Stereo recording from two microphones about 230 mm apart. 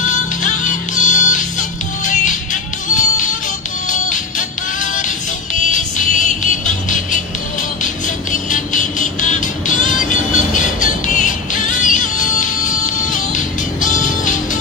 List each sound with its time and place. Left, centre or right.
0.0 s music: left
5.5 s music: left